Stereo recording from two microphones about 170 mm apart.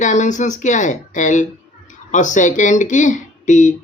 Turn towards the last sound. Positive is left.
turn(degrees=45)  # may be behind; listen again after turning